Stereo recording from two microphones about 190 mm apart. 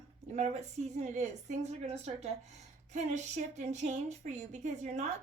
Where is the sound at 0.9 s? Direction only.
35° right (ahead or behind).